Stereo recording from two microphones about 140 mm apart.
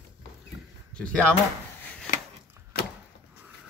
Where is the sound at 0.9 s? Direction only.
5° left (ahead or behind).